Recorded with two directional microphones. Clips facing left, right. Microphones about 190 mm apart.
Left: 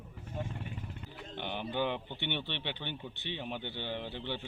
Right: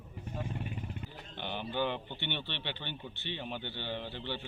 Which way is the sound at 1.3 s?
15° left (ahead or behind).